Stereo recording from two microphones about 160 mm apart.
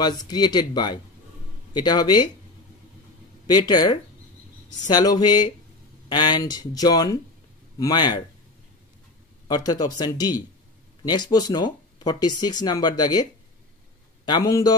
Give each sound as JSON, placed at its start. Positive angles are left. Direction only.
{"t": 0.0, "sound": "speech", "side_deg": 25}
{"t": 3.4, "sound": "speech", "side_deg": 25}
{"t": 9.5, "sound": "speech", "side_deg": 25}